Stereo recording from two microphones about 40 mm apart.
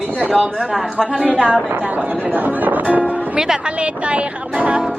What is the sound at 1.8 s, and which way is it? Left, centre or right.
Speech, right.